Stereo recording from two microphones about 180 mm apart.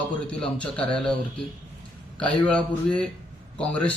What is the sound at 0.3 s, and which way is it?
Speech, 5° left (ahead or behind).